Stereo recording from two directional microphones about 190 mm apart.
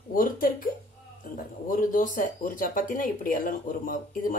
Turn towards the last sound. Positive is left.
turn(degrees=45)  # may be behind; listen again after turning